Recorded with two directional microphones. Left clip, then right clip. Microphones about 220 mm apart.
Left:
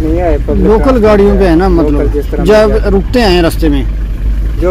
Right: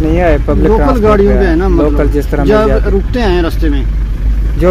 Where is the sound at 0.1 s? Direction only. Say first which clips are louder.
Right 2 dB; 60° right (ahead or behind).